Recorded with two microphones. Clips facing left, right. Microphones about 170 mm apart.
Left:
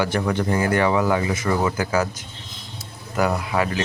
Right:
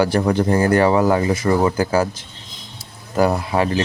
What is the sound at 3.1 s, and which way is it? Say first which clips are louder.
Speech: right 4 dB; 30° right (ahead or behind).